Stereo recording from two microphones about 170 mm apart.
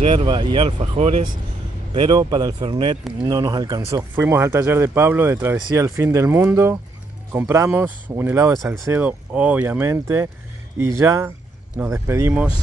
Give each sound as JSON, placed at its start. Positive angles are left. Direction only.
{"t": 0.0, "sound": "speech", "side_deg": -35}
{"t": 0.7, "sound": "speech", "side_deg": -40}
{"t": 2.0, "sound": "speech", "side_deg": -25}